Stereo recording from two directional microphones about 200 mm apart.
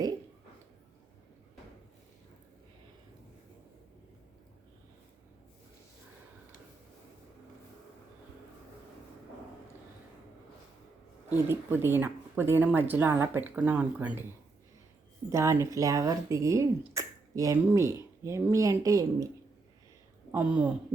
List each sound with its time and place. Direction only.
11.3 s speech: 10° right (ahead or behind)
15.3 s speech: 15° right (ahead or behind)
20.3 s speech: 5° right (ahead or behind)